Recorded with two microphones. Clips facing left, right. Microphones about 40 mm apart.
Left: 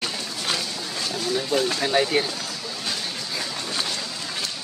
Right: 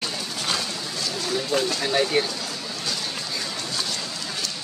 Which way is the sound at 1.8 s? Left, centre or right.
Centre.